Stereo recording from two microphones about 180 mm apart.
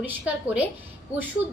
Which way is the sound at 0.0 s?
10° right (ahead or behind).